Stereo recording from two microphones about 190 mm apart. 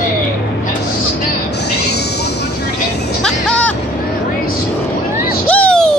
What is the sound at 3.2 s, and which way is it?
Music, 5° left (ahead or behind).